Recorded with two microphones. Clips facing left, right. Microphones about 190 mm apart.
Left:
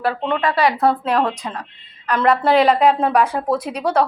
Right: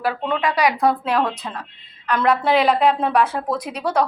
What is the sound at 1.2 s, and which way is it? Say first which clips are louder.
Speech: left 2 dB; 10° left (ahead or behind).